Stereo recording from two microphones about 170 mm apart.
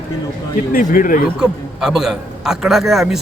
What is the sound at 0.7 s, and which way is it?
Speech, 55° left (ahead or behind).